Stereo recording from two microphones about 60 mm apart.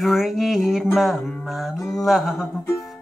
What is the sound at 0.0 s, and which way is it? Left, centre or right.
Music, centre.